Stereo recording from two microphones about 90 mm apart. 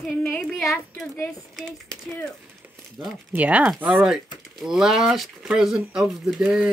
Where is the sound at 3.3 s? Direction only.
15° right (ahead or behind).